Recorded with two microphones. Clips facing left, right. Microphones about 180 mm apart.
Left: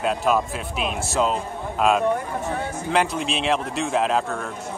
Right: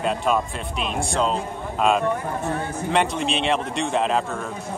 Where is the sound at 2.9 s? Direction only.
Centre (ahead or behind).